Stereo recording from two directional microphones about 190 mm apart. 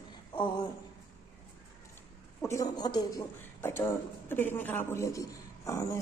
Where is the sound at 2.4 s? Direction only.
15° left (ahead or behind).